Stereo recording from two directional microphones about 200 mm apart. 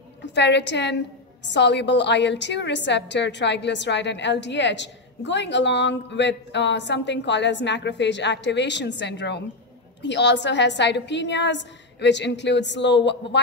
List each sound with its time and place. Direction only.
0.2 s a woman's voice: 60° left (ahead or behind)